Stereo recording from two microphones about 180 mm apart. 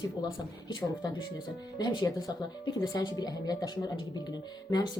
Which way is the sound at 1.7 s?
25° left (ahead or behind).